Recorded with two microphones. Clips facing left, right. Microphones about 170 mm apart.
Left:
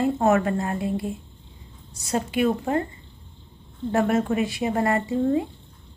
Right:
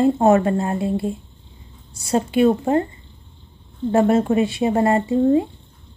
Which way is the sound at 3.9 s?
30° right (ahead or behind).